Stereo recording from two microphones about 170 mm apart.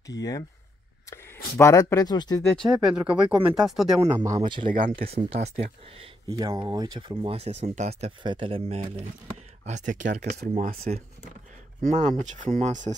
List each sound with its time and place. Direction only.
0.2 s speech: 20° left (ahead or behind)
1.6 s speech: 20° left (ahead or behind)
2.5 s speech: centre (ahead or behind)
4.0 s speech: 20° right (ahead or behind)
4.6 s speech: 55° right (ahead or behind)
5.0 s speech: 35° right (ahead or behind)
6.3 s speech: 25° right (ahead or behind); by 8.1 s 40° right (ahead or behind)
8.2 s speech: 30° right (ahead or behind); by 12.9 s 45° right (ahead or behind)